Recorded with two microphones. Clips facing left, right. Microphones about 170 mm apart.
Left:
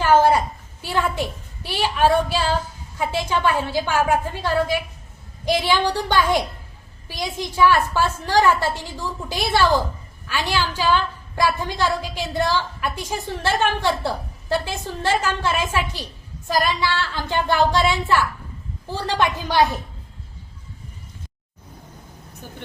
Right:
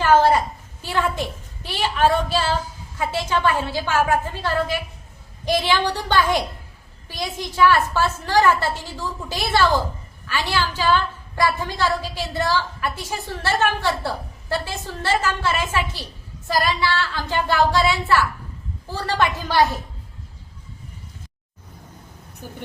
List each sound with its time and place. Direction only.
0.0 s a woman's voice: 10° left (ahead or behind)
22.4 s speech: 10° right (ahead or behind)